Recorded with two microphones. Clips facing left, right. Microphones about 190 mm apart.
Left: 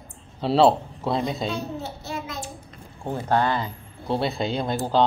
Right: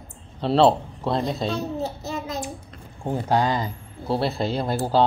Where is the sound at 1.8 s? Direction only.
40° right (ahead or behind).